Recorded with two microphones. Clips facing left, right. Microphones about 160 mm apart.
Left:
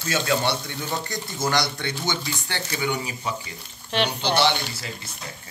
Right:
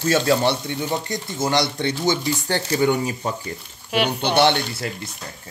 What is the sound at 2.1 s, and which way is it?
Speech, 40° right (ahead or behind).